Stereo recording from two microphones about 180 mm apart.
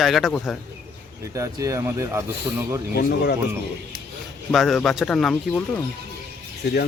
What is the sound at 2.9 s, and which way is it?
Speech, 60° left (ahead or behind).